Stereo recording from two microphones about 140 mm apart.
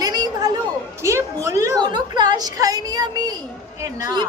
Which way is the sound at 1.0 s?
20° right (ahead or behind).